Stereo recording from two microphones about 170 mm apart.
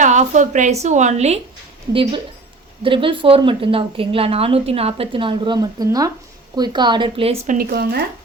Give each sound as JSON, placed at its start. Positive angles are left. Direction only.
{"t": 0.0, "sound": "a woman's voice", "side_deg": -45}
{"t": 7.4, "sound": "speech", "side_deg": -55}